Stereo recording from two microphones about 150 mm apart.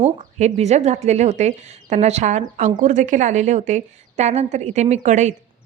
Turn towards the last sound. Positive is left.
turn(degrees=-55)  # may be behind; listen again after turning